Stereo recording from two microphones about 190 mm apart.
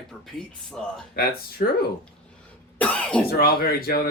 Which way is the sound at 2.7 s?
5° left (ahead or behind).